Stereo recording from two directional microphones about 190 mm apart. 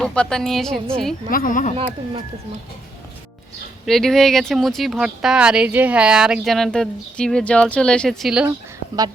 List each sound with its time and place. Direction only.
0.0 s speech: 5° left (ahead or behind)
1.3 s speech: 45° left (ahead or behind)
1.7 s speech: 30° right (ahead or behind)
3.8 s speech: centre (ahead or behind)